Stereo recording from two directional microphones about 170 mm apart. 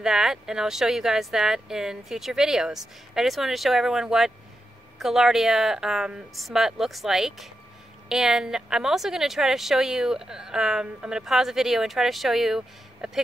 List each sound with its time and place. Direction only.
0.0 s a woman's voice: 5° right (ahead or behind)